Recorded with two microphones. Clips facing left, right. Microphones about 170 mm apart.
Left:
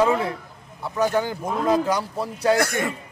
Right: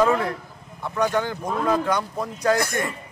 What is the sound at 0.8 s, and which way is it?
Speech, 5° left (ahead or behind).